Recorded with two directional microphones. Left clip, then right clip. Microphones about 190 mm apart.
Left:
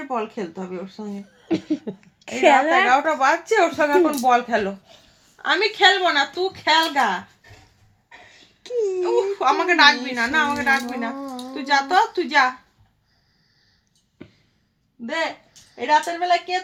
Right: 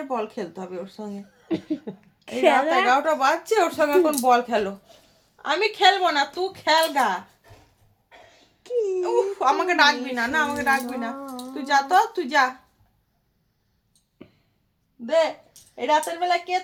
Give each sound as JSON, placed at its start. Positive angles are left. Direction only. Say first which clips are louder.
{"t": 0.1, "sound": "a woman's voice", "louder": "left 3 dB", "side_deg": 20}
{"t": 1.5, "sound": "speech", "louder": "left 4 dB", "side_deg": 40}
{"t": 2.9, "sound": "a woman's voice", "louder": "left 2 dB", "side_deg": 20}
{"t": 8.6, "sound": "speech", "louder": "left 1 dB", "side_deg": 30}
{"t": 9.1, "sound": "a woman's voice", "louder": "left 1 dB", "side_deg": 20}
{"t": 15.7, "sound": "a woman's voice", "louder": "left 3 dB", "side_deg": 15}